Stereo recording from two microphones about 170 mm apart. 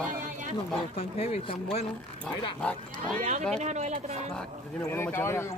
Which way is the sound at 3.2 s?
45° right (ahead or behind).